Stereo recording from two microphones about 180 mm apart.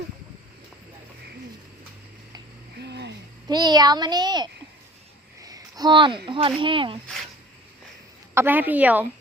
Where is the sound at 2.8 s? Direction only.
70° right (ahead or behind).